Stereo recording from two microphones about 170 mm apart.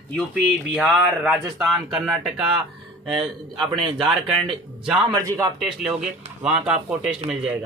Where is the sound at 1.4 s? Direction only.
25° right (ahead or behind).